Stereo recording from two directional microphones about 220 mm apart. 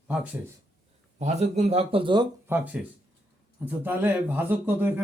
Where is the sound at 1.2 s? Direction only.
30° right (ahead or behind).